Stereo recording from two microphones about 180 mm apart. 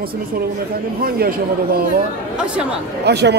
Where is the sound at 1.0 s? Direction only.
55° right (ahead or behind).